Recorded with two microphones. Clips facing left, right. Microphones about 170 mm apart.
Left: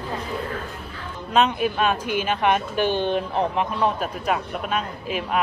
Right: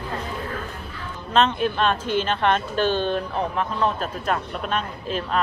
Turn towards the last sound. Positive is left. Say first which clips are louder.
# even
turn(degrees=10)  # may be behind; listen again after turning